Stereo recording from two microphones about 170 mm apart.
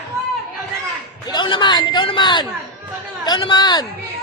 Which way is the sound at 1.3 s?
25° left (ahead or behind).